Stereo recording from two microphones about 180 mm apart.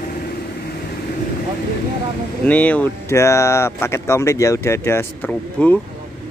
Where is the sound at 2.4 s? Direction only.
10° left (ahead or behind).